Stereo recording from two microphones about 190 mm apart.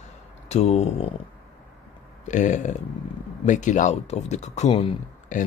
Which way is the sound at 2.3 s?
40° left (ahead or behind).